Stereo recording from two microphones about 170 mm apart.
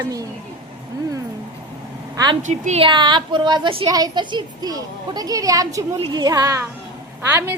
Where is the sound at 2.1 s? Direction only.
25° right (ahead or behind).